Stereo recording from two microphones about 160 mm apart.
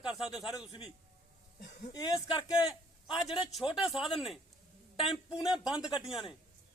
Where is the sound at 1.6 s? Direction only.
90° left.